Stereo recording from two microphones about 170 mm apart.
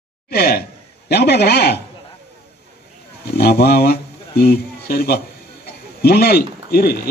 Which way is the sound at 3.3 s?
70° left (ahead or behind).